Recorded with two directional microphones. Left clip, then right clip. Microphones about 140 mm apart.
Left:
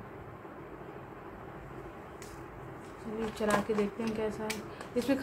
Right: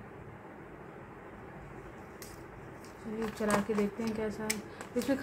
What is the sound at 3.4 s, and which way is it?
Speech, 15° right (ahead or behind).